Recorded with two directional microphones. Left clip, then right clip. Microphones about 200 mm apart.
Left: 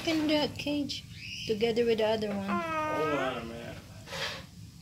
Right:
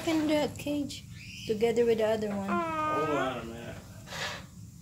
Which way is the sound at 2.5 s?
20° right (ahead or behind).